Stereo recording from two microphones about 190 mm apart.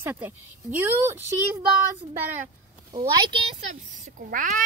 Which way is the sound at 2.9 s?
25° right (ahead or behind).